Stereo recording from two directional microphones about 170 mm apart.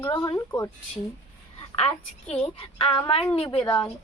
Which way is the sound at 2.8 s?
30° left (ahead or behind).